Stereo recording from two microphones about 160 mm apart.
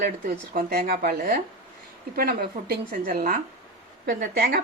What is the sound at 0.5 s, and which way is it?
A woman's voice, 65° right (ahead or behind).